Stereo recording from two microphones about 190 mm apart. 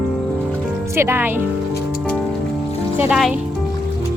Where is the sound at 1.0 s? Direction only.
10° right (ahead or behind).